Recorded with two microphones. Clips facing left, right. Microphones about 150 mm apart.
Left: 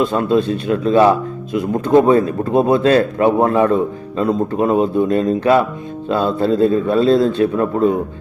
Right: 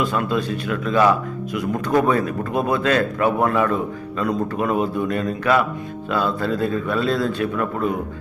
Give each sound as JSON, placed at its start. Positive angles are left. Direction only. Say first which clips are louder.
{"t": 0.0, "sound": "a man's voice", "louder": "left 6 dB", "side_deg": 30}